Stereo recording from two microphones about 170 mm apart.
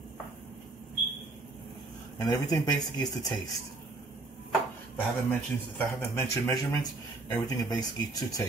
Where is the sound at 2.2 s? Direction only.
20° left (ahead or behind).